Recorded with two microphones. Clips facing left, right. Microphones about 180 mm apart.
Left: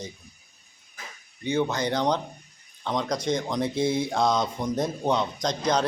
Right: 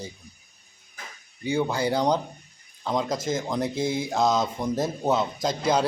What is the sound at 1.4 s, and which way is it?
Speech, 10° right (ahead or behind).